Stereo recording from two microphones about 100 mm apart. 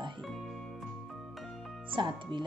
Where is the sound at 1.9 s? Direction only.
50° right (ahead or behind).